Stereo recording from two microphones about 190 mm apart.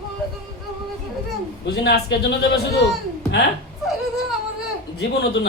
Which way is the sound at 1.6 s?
60° left (ahead or behind).